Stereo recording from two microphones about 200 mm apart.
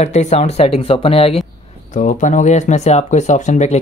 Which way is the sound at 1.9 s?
40° left (ahead or behind).